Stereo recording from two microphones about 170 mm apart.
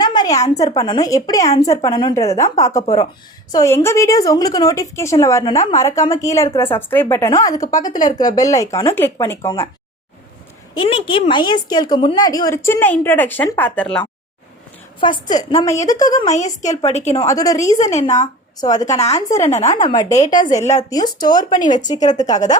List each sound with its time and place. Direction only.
0.0 s a sound: 25° left (ahead or behind)
0.5 s speech: 20° left (ahead or behind)
7.9 s a woman's voice: 50° left (ahead or behind)
8.4 s speech: 20° left (ahead or behind)
10.8 s speech: 30° left (ahead or behind); by 14.0 s 5° left (ahead or behind)
15.0 s speech: 25° left (ahead or behind)
16.1 s a woman's voice: 45° left (ahead or behind)
17.2 s speech: 20° left (ahead or behind)
17.6 s a woman's voice: 45° left (ahead or behind)
18.2 s speech: 20° left (ahead or behind)
18.9 s a woman's voice: 40° left (ahead or behind)
19.9 s speech: 25° left (ahead or behind)